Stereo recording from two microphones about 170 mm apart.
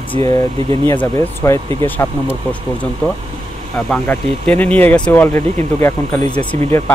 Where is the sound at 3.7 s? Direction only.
5° left (ahead or behind).